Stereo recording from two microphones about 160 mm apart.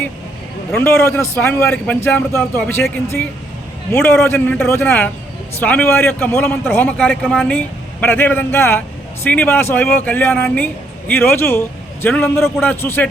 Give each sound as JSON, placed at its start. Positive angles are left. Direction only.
{"t": 0.7, "sound": "a man's voice", "side_deg": 15}